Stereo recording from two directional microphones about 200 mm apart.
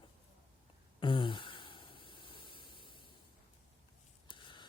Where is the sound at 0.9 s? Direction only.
25° left (ahead or behind).